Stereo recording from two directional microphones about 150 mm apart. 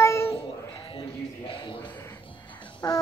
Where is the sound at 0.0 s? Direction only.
20° left (ahead or behind).